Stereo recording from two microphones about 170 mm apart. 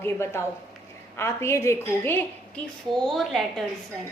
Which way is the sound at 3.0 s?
Centre (ahead or behind).